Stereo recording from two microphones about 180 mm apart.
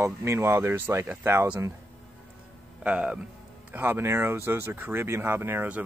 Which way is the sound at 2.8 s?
10° right (ahead or behind).